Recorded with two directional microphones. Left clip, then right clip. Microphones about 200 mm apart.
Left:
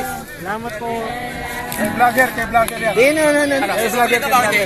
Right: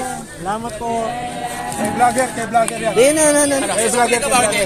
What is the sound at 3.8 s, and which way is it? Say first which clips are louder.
Speech: right 2 dB; 25° right (ahead or behind).